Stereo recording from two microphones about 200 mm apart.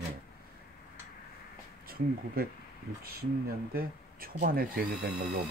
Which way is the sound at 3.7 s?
45° right (ahead or behind).